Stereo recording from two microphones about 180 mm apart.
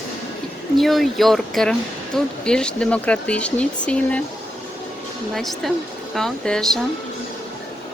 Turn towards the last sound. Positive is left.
turn(degrees=5)  # may be behind; listen again after turning